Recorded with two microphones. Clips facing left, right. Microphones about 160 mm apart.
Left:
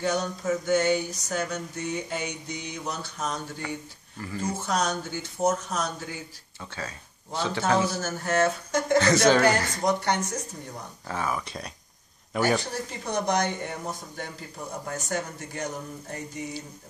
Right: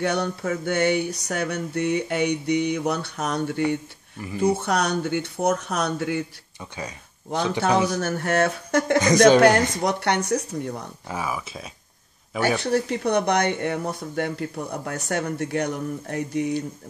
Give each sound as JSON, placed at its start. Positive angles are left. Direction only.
{"t": 0.0, "sound": "a sound", "side_deg": -65}
{"t": 4.2, "sound": "speech", "side_deg": -15}
{"t": 4.6, "sound": "a sound", "side_deg": -65}
{"t": 7.3, "sound": "speech", "side_deg": -15}
{"t": 8.0, "sound": "a sound", "side_deg": -65}
{"t": 9.0, "sound": "speech", "side_deg": -15}
{"t": 9.4, "sound": "speech", "side_deg": -65}
{"t": 11.1, "sound": "speech", "side_deg": -10}
{"t": 12.7, "sound": "speech", "side_deg": -65}